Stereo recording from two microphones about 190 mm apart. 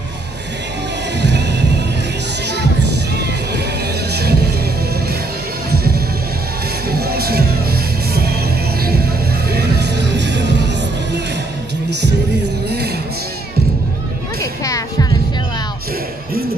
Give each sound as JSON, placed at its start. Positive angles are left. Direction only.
{"t": 1.2, "sound": "music", "side_deg": -65}
{"t": 5.7, "sound": "music", "side_deg": -55}
{"t": 9.5, "sound": "music", "side_deg": -60}
{"t": 12.6, "sound": "music", "side_deg": -60}
{"t": 14.4, "sound": "music", "side_deg": 15}